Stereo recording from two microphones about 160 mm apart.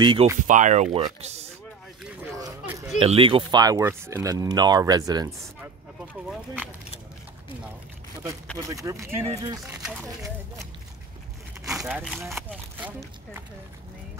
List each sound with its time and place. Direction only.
0.0 s speech: 30° right (ahead or behind)
0.5 s speech: 50° right (ahead or behind)
2.6 s a sound: 15° right (ahead or behind)
3.0 s speech: 35° right (ahead or behind)
8.6 s speech: 20° right (ahead or behind)
9.7 s speech: 5° right (ahead or behind)
10.0 s speech: 20° right (ahead or behind)
11.6 s speech: centre (ahead or behind)
12.7 s speech: 10° right (ahead or behind)